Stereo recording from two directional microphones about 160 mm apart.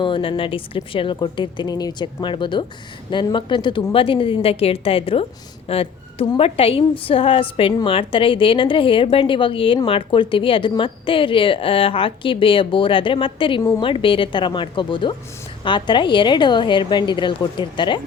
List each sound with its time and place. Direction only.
0.0 s a woman's voice: 35° left (ahead or behind)